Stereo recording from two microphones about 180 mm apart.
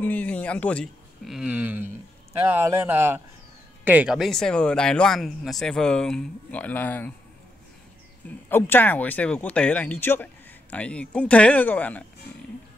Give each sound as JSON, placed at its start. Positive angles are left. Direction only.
{"t": 0.0, "sound": "speech", "side_deg": 10}
{"t": 8.5, "sound": "speech", "side_deg": 10}